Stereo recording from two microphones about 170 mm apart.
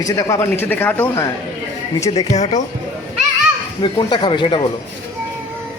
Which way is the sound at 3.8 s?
25° left (ahead or behind).